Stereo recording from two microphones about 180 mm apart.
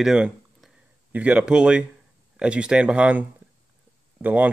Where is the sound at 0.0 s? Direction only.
5° right (ahead or behind).